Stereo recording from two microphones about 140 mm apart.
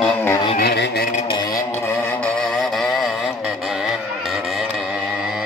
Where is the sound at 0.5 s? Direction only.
80° left.